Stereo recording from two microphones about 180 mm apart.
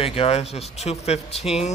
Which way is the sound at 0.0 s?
30° left (ahead or behind).